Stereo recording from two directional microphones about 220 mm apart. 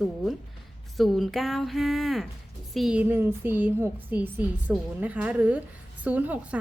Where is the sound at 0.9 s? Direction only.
Centre (ahead or behind).